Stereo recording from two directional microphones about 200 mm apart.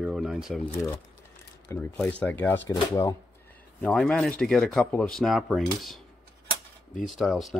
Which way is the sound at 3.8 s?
5° left (ahead or behind).